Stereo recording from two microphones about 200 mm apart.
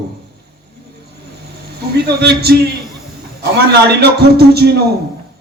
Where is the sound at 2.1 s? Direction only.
55° right (ahead or behind).